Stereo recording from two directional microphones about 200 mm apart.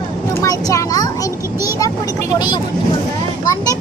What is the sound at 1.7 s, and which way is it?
A child's voice, 15° left (ahead or behind).